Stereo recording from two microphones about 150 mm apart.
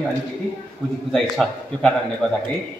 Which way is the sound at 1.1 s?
Centre (ahead or behind).